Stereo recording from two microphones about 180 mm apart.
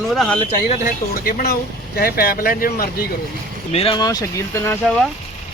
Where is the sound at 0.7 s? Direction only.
50° left (ahead or behind).